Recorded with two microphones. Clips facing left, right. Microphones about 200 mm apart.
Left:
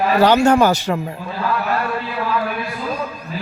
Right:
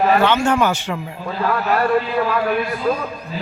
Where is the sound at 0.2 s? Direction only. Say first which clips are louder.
Left 4 dB; 40° left (ahead or behind).